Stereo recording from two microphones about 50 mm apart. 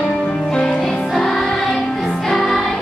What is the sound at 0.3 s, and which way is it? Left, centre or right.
Music, left.